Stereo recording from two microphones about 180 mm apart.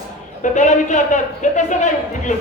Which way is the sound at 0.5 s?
45° left (ahead or behind).